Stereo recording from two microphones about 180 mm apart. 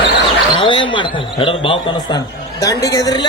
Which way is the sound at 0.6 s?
25° left (ahead or behind).